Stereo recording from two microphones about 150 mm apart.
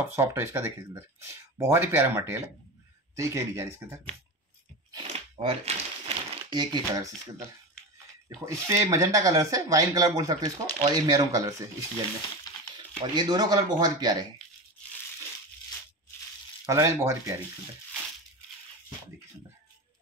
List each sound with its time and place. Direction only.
0.0 s speech: 15° right (ahead or behind)
5.1 s a sound: 40° right (ahead or behind)
8.5 s speech: 20° right (ahead or behind)
12.7 s speech: 30° right (ahead or behind)
16.6 s speech: 20° right (ahead or behind)